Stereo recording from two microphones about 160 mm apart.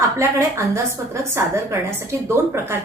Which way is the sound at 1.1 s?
15° right (ahead or behind).